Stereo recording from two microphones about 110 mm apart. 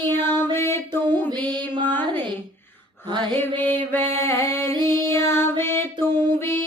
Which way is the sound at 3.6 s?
15° left (ahead or behind).